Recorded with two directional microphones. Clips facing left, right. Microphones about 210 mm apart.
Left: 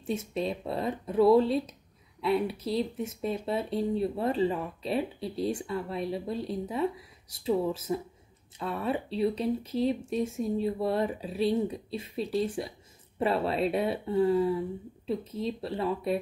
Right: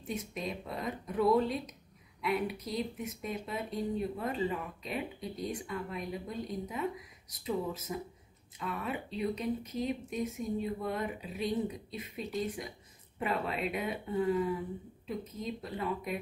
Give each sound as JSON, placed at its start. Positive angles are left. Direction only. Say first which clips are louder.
{"t": 0.0, "sound": "speech", "louder": "left 7 dB", "side_deg": 25}